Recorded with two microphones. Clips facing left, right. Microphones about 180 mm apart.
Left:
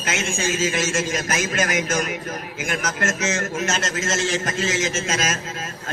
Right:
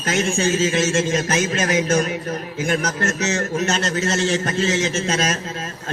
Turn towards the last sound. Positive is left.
turn(degrees=-35)  # may be behind; listen again after turning